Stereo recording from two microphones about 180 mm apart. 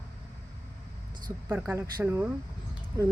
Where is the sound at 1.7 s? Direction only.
10° right (ahead or behind).